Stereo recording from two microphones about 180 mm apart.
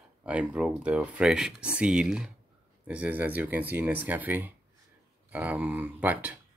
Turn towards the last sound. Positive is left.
turn(degrees=-10)  # may be behind; listen again after turning